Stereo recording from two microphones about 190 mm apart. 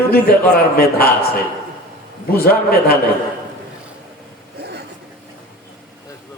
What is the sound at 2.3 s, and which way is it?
Speech, 55° left (ahead or behind).